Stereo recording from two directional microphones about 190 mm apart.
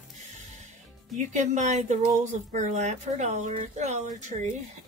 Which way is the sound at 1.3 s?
40° right (ahead or behind).